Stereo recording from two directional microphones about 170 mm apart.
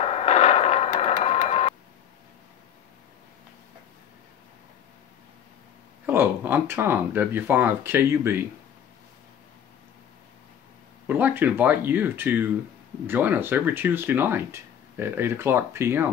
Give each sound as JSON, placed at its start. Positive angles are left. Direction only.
{"t": 0.0, "sound": "a sound", "side_deg": 40}
{"t": 6.0, "sound": "speech", "side_deg": -10}
{"t": 11.1, "sound": "speech", "side_deg": -10}